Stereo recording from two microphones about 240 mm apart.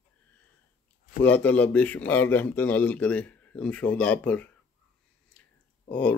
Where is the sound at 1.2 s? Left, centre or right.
Centre.